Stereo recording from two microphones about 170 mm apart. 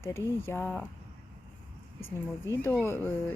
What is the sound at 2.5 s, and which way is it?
Speech, 15° left (ahead or behind).